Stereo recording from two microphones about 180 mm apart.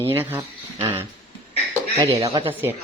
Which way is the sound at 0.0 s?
10° right (ahead or behind).